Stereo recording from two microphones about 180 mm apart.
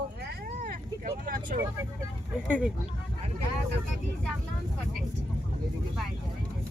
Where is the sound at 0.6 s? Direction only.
50° right (ahead or behind).